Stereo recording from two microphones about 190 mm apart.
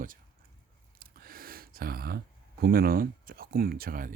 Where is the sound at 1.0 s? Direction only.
50° right (ahead or behind).